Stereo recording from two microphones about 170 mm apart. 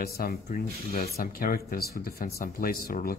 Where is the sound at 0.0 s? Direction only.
65° left (ahead or behind).